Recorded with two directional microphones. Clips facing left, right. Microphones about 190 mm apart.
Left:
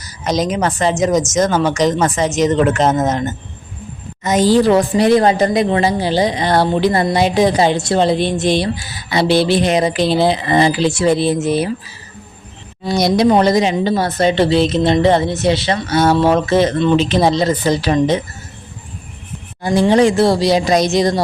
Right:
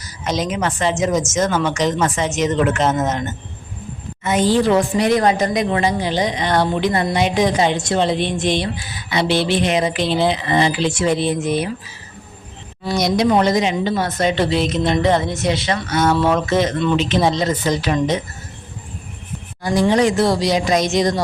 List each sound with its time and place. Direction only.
0.3 s speech: 40° left (ahead or behind)
12.9 s speech: 35° left (ahead or behind)
19.6 s speech: 25° left (ahead or behind)